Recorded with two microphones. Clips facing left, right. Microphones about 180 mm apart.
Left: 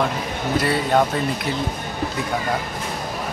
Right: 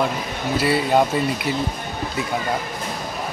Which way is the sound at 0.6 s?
10° right (ahead or behind).